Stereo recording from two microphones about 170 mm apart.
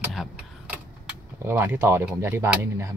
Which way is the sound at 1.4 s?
15° right (ahead or behind).